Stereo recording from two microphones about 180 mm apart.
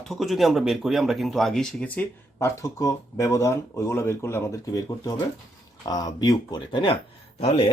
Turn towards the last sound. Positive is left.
turn(degrees=35)  # may be behind; listen again after turning